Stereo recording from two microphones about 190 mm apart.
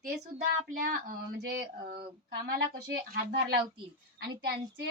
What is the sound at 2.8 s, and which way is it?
A woman's voice, 60° right (ahead or behind).